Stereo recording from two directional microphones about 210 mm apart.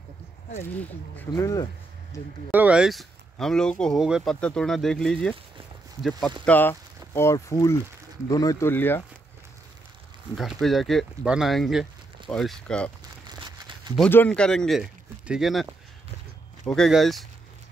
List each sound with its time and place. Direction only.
0.6 s speech: 10° left (ahead or behind)
2.5 s speech: 5° right (ahead or behind); by 9.0 s 10° left (ahead or behind)
10.3 s speech: centre (ahead or behind)
13.3 s a sound: 20° right (ahead or behind)
13.9 s speech: 5° left (ahead or behind)